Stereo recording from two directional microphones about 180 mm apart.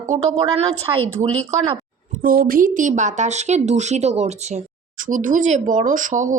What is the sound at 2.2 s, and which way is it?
A woman's voice, 55° right (ahead or behind).